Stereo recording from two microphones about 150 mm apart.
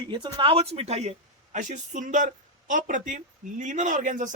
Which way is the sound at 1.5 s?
55° right (ahead or behind).